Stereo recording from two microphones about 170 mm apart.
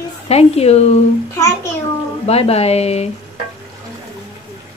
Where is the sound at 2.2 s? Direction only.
35° left (ahead or behind).